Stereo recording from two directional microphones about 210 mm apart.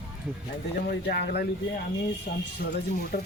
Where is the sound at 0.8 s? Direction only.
45° left (ahead or behind).